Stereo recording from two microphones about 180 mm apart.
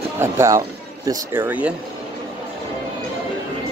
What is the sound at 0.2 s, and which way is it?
Speech, 15° right (ahead or behind).